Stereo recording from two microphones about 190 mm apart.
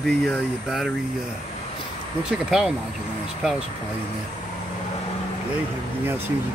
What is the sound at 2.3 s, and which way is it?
Speech, 5° right (ahead or behind).